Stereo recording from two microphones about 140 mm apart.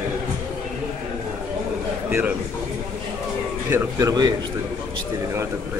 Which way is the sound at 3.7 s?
25° right (ahead or behind).